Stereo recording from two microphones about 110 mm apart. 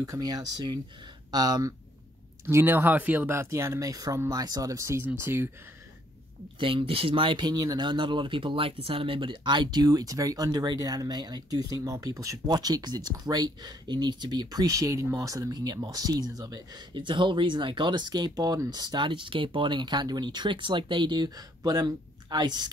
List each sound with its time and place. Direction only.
0.0 s speech: 35° right (ahead or behind)
2.4 s speech: 20° right (ahead or behind)
6.6 s speech: 55° right (ahead or behind); by 16.8 s 35° right (ahead or behind)
16.9 s speech: 45° right (ahead or behind)